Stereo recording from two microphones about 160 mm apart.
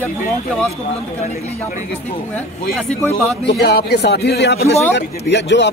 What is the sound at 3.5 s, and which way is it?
Speech, 90° left.